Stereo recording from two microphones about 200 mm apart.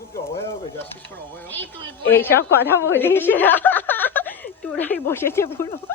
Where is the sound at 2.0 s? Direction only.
10° left (ahead or behind).